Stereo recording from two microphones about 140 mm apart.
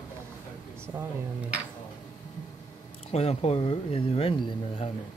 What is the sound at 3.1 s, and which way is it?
Speech, 50° left (ahead or behind).